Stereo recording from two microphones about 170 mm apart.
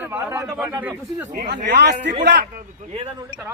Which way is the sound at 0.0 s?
10° right (ahead or behind).